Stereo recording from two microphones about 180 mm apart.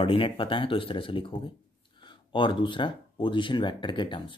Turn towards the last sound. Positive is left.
turn(degrees=25)  # may be behind; listen again after turning